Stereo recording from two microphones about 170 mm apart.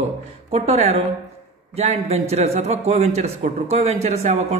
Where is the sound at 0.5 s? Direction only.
40° right (ahead or behind).